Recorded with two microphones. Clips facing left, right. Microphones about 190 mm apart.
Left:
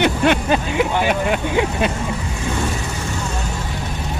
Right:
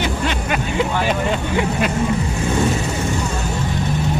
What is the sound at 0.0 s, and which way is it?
Vehicle, 60° left (ahead or behind).